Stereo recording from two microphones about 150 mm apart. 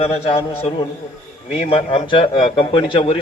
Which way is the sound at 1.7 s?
40° left (ahead or behind).